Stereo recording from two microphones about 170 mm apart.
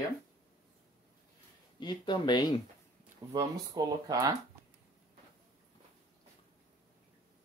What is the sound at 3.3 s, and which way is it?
Speech, 20° right (ahead or behind).